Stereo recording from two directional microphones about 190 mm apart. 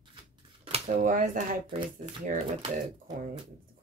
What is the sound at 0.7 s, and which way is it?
Speech, 30° right (ahead or behind).